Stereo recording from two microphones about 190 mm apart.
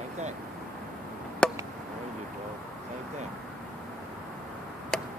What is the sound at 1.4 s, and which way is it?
Chop, 5° left (ahead or behind).